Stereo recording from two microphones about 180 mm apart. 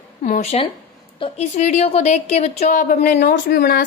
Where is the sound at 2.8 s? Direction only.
65° left (ahead or behind).